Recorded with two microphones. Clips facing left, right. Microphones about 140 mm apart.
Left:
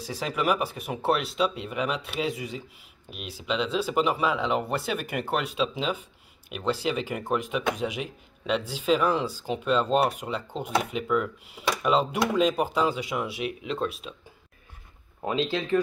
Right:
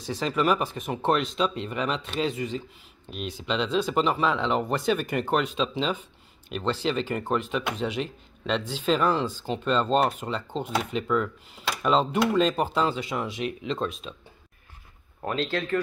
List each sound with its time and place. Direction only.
0.0 s speech: 10° left (ahead or behind)
15.2 s speech: 15° left (ahead or behind)